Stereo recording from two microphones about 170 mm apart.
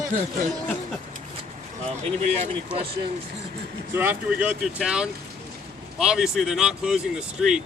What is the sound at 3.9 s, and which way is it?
Speech, 10° right (ahead or behind).